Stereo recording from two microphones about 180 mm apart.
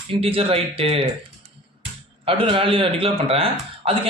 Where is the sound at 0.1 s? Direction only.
30° right (ahead or behind).